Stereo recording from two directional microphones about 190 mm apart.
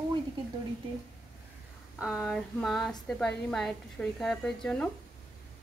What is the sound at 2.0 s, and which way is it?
A woman's voice, centre (ahead or behind).